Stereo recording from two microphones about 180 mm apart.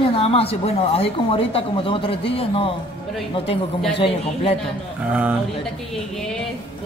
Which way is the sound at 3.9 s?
30° left (ahead or behind).